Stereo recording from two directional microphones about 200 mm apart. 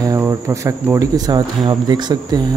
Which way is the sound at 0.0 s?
15° right (ahead or behind).